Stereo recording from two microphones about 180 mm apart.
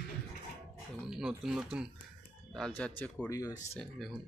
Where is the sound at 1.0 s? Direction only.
Centre (ahead or behind).